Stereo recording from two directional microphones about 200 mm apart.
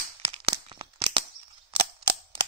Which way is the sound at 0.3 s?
25° right (ahead or behind).